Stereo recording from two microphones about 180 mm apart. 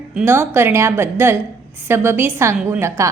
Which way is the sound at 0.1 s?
10° right (ahead or behind).